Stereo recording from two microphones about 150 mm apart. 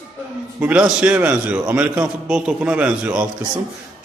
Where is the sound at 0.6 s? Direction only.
10° right (ahead or behind).